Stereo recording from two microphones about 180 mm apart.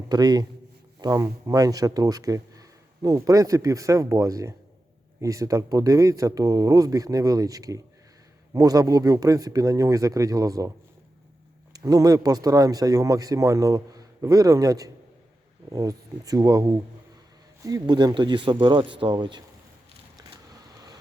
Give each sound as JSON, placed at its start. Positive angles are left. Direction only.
{"t": 0.1, "sound": "speech", "side_deg": -20}
{"t": 11.7, "sound": "speech", "side_deg": -20}
{"t": 20.3, "sound": "vehicle", "side_deg": -20}